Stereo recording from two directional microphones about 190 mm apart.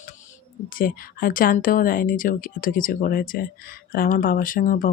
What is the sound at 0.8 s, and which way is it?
Speech, 45° left (ahead or behind).